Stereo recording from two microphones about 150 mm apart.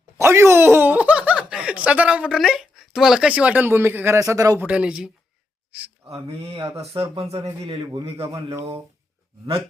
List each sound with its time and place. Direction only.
0.2 s speech: 15° right (ahead or behind)
4.6 s speech: 5° right (ahead or behind)
6.1 s speech: 40° right (ahead or behind)
7.8 s speech: 25° right (ahead or behind)
8.0 s speech: 40° right (ahead or behind)
8.3 s speech: 20° right (ahead or behind)